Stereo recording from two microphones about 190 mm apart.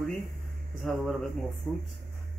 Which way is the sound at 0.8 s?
Centre (ahead or behind).